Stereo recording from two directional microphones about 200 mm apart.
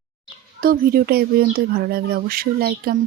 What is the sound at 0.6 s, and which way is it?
Speech, 45° right (ahead or behind).